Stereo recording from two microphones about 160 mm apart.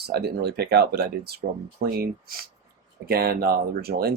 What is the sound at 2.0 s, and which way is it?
Speech, 70° right (ahead or behind).